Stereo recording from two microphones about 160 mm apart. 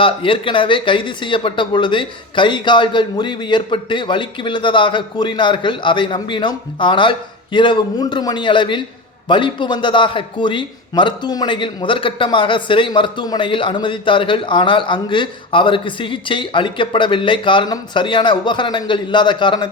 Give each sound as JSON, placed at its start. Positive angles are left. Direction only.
{"t": 0.0, "sound": "a man's voice", "side_deg": 30}